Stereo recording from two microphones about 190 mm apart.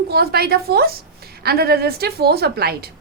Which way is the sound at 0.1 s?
55° right (ahead or behind).